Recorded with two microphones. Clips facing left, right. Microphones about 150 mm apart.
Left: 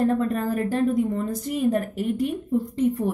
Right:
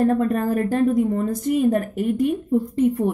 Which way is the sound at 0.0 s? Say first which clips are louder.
Right 3 dB; 50° right (ahead or behind).